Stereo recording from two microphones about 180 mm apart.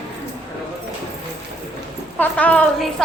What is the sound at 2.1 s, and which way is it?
Speech, 10° left (ahead or behind).